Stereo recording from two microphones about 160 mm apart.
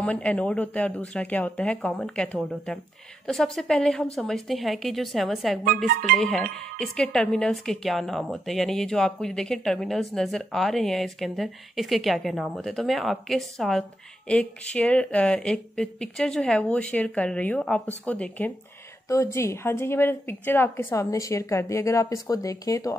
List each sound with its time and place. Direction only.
0.0 s a woman's voice: 5° left (ahead or behind)